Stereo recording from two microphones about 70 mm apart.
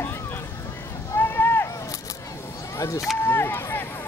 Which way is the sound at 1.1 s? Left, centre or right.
Left.